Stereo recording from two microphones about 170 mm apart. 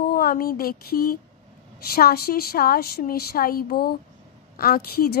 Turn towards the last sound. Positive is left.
turn(degrees=65)  # may be behind; listen again after turning